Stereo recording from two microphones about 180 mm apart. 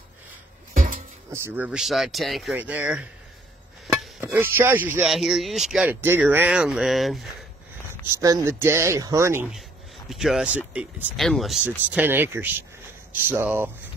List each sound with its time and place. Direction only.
0.7 s music: 50° right (ahead or behind)
1.3 s speech: 10° right (ahead or behind)
3.8 s a sound: centre (ahead or behind)
4.2 s speech: 10° right (ahead or behind)
8.2 s speech: 20° right (ahead or behind)
10.0 s speech: centre (ahead or behind)